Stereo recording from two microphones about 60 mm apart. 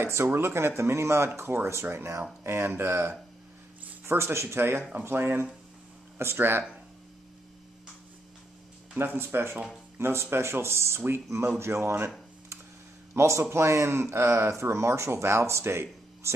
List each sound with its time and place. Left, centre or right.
0.0 s speech: right
8.9 s speech: right
13.1 s speech: right